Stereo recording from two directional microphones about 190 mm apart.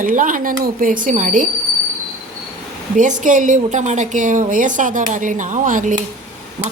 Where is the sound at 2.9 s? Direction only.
40° right (ahead or behind).